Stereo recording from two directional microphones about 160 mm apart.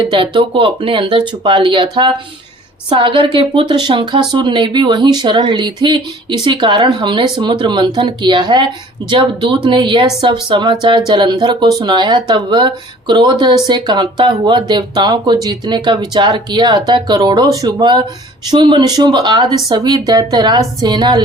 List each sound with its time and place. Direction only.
0.0 s speech: 30° right (ahead or behind)